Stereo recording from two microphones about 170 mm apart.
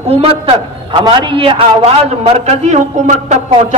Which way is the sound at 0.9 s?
30° right (ahead or behind).